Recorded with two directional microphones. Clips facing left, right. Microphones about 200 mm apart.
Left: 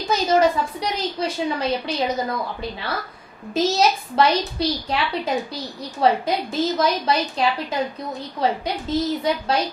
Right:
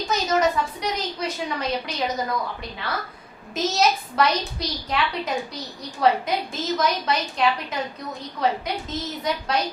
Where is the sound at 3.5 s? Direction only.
30° left (ahead or behind).